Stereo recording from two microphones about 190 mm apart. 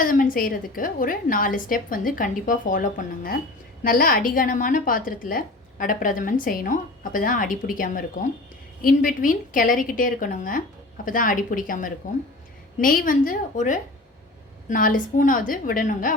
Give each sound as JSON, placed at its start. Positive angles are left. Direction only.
{"t": 0.0, "sound": "a woman's voice", "side_deg": 45}